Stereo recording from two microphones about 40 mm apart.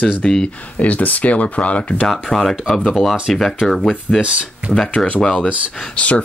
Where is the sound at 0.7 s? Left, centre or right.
Left.